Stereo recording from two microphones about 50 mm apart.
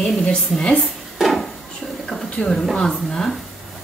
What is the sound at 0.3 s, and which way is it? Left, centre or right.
Speech, centre.